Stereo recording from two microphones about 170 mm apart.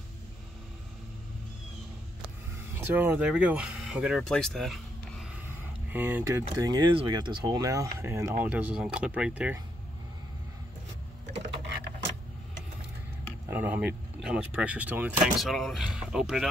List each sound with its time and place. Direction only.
2.8 s speech: 10° right (ahead or behind)
5.9 s speech: 10° right (ahead or behind)
13.5 s speech: 10° right (ahead or behind)